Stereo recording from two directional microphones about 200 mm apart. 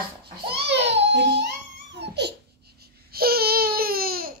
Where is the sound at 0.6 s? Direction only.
60° right (ahead or behind).